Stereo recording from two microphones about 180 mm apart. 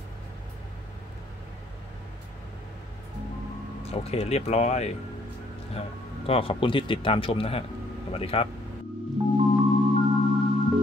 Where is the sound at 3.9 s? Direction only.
35° left (ahead or behind).